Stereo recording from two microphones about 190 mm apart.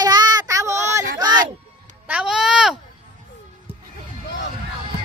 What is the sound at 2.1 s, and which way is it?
Speech, 5° right (ahead or behind).